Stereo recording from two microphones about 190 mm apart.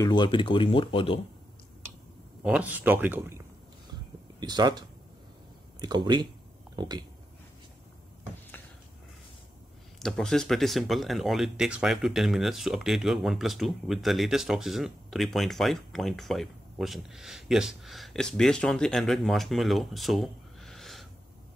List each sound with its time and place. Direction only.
0.0 s speech: 25° left (ahead or behind)
2.4 s speech: 5° right (ahead or behind); by 6.2 s 25° right (ahead or behind)
9.9 s speech: centre (ahead or behind)